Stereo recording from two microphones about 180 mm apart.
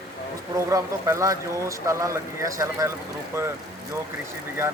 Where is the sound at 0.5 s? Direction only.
15° right (ahead or behind).